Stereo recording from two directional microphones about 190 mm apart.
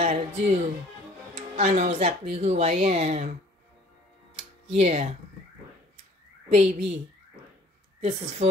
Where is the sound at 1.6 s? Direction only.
40° right (ahead or behind).